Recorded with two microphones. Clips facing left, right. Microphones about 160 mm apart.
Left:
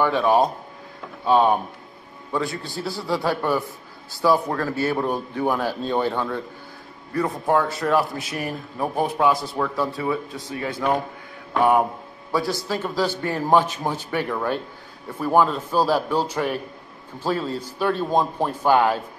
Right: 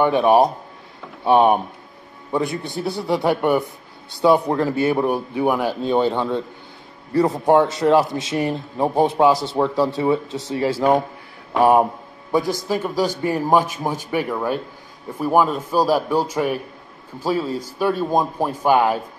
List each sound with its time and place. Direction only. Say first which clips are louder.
0.0 s a man's voice: right 4 dB; 20° right (ahead or behind)
7.4 s a man's voice: right 5 dB; 25° right (ahead or behind)
10.2 s speech: right 5 dB; 80° right
10.5 s a man's voice: right 6 dB; 30° right (ahead or behind)
12.3 s a man's voice: right 4 dB; 20° right (ahead or behind)